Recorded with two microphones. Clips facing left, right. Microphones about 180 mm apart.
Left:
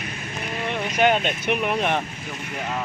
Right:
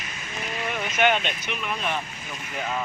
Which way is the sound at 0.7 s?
35° left (ahead or behind).